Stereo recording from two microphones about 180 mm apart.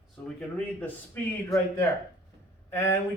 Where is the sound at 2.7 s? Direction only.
15° left (ahead or behind).